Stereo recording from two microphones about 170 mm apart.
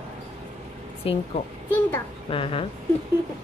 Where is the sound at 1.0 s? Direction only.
35° left (ahead or behind).